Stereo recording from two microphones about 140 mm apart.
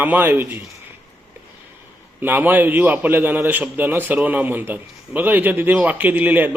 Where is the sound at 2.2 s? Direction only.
10° right (ahead or behind).